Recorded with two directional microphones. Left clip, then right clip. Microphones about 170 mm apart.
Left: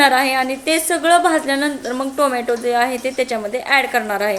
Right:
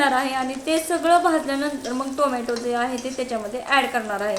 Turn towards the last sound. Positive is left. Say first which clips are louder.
# left 6 dB
turn(degrees=15)  # may be behind; listen again after turning